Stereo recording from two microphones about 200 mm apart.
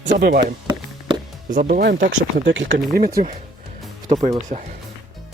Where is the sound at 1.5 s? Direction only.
45° right (ahead or behind).